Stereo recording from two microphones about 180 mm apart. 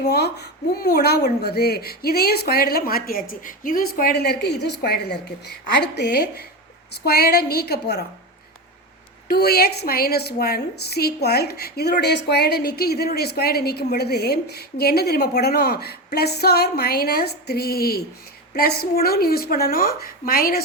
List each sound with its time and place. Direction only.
0.1 s a woman's voice: 65° left (ahead or behind)
9.3 s a woman's voice: 60° left (ahead or behind)